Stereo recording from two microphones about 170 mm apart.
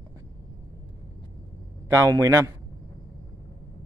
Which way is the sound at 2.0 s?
20° right (ahead or behind).